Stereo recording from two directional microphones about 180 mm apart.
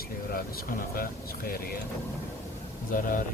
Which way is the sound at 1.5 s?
55° left (ahead or behind).